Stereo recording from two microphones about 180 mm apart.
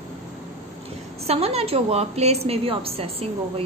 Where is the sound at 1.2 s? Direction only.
35° right (ahead or behind).